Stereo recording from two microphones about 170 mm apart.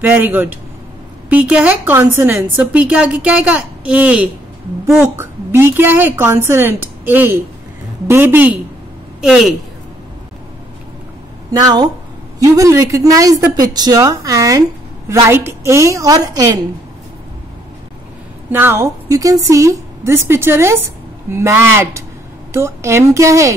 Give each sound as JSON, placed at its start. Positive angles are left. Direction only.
{"t": 0.0, "sound": "a woman's voice", "side_deg": -10}
{"t": 11.5, "sound": "a woman's voice", "side_deg": -25}
{"t": 18.5, "sound": "a woman's voice", "side_deg": -15}